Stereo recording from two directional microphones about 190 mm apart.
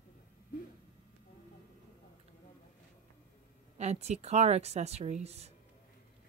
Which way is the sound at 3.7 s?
35° right (ahead or behind).